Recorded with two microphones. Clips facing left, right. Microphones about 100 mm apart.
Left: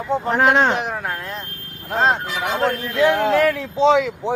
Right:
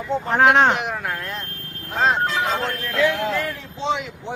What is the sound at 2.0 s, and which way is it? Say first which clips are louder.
Speech: even; 15° left (ahead or behind).